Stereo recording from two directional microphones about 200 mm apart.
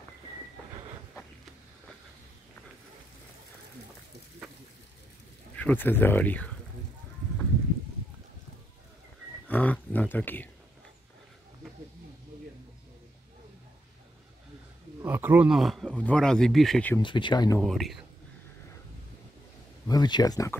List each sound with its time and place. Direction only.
5.6 s speech: 10° left (ahead or behind)
9.5 s speech: 10° left (ahead or behind)
15.0 s speech: 10° right (ahead or behind)
17.0 s speech: 25° left (ahead or behind)
17.6 s speech: centre (ahead or behind)
19.9 s speech: 20° left (ahead or behind)